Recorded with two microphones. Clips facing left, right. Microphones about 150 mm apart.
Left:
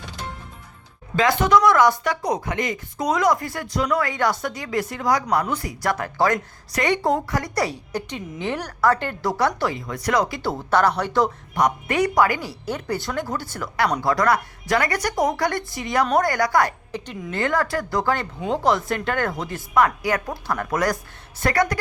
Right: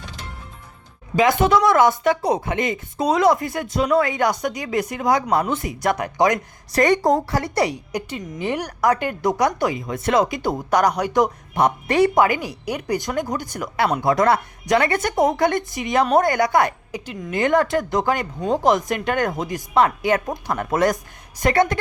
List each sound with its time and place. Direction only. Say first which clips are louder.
1.1 s a woman's voice: right 1 dB; 20° right (ahead or behind)
6.7 s a woman's voice: right 4 dB; 40° right (ahead or behind); by 7.7 s 25° right (ahead or behind)
7.7 s a woman's voice: right 2 dB; 10° right (ahead or behind)
11.6 s a woman's voice: right 3 dB; 30° right (ahead or behind)
16.9 s a woman's voice: right 2 dB; 10° right (ahead or behind)